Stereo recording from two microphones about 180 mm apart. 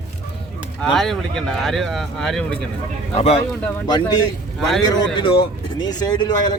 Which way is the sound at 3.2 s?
35° left (ahead or behind).